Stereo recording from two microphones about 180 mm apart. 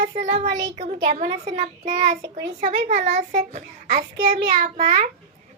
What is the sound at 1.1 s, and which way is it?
A child's voice, 45° right (ahead or behind).